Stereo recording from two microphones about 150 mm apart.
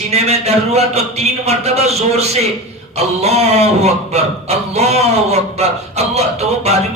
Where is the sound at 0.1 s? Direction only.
45° right (ahead or behind).